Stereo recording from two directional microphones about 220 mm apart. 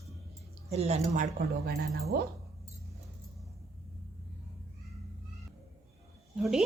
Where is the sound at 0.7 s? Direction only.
30° right (ahead or behind).